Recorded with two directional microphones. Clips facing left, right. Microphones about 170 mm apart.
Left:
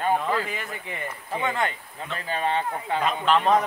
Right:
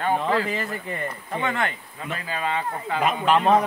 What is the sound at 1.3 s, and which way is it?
Speech, 15° left (ahead or behind).